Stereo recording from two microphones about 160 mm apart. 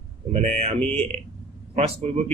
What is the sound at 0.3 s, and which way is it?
A man's voice, 45° right (ahead or behind).